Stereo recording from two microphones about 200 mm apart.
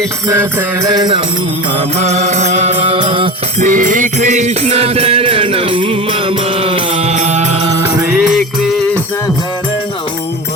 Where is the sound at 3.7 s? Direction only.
40° right (ahead or behind).